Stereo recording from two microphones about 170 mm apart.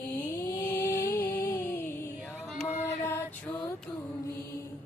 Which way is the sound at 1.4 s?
15° left (ahead or behind).